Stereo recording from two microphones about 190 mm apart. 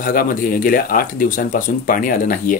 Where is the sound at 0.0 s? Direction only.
45° left (ahead or behind).